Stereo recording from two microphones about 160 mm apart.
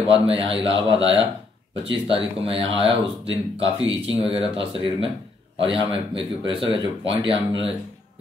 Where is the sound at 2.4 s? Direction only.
35° right (ahead or behind).